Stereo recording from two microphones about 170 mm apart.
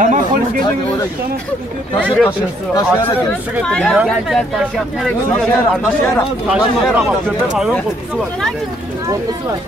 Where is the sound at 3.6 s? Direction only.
Centre (ahead or behind).